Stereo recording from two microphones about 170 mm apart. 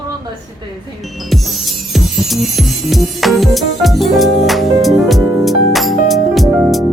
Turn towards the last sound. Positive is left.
turn(degrees=0)  # may be behind; listen again after turning